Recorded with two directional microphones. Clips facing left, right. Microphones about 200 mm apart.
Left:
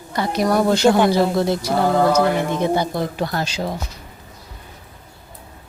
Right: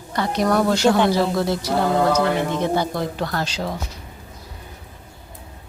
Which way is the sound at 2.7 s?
15° left (ahead or behind).